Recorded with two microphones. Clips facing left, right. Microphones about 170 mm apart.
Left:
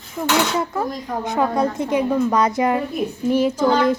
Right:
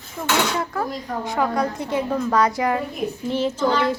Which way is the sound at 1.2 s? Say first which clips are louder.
Left 3 dB; 20° left (ahead or behind).